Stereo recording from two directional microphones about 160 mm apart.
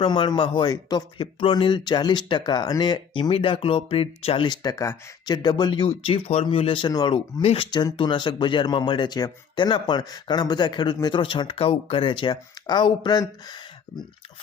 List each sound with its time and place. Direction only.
0.0 s speech: 30° left (ahead or behind)
5.8 s speech: 35° left (ahead or behind)